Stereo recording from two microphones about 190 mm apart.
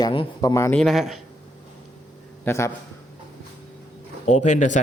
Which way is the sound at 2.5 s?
15° left (ahead or behind).